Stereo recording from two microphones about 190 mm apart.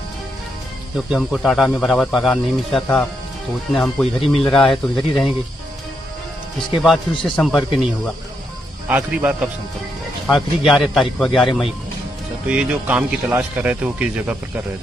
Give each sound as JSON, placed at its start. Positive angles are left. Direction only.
{"t": 0.9, "sound": "speech", "side_deg": 0}
{"t": 6.8, "sound": "speech", "side_deg": 0}
{"t": 8.8, "sound": "speech", "side_deg": -10}
{"t": 12.4, "sound": "speech", "side_deg": -5}